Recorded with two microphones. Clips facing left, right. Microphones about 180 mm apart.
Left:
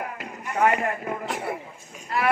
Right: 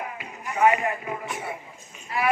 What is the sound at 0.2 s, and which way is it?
Speech, 60° left (ahead or behind).